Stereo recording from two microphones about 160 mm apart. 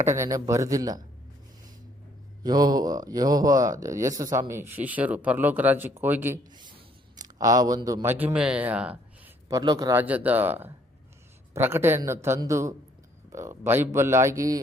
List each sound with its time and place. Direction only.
0.2 s speech: 20° right (ahead or behind)
2.4 s speech: 25° right (ahead or behind)
6.5 s speech: 30° right (ahead or behind)
8.0 s speech: 10° right (ahead or behind)
9.5 s speech: 25° right (ahead or behind)
10.0 s a man's voice: 10° right (ahead or behind)